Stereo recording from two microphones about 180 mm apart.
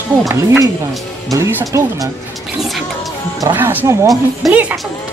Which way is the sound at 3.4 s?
10° right (ahead or behind).